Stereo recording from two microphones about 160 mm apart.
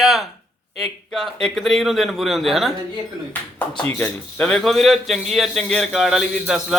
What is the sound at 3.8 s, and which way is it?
A man's voice, 10° left (ahead or behind).